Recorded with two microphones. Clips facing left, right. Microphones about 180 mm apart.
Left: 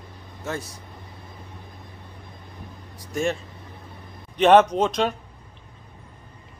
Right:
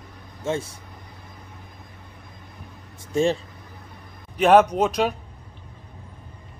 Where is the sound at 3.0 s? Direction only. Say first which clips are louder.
Right 4 dB; 30° right (ahead or behind).